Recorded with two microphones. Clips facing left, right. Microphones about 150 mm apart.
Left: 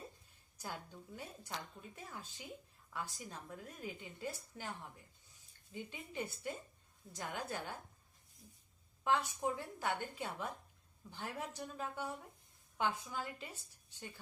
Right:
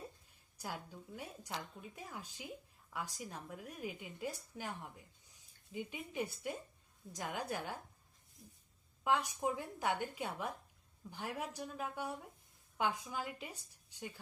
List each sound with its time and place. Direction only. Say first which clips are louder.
0.5 s a woman's voice: right 2 dB; 10° right (ahead or behind)
2.0 s speech: right 2 dB; 10° right (ahead or behind)
9.0 s speech: right 1 dB; 10° right (ahead or behind)